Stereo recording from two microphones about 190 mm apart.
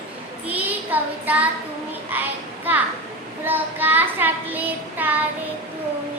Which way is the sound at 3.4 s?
10° right (ahead or behind).